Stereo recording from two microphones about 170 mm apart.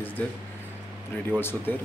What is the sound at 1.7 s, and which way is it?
Speech, 10° left (ahead or behind).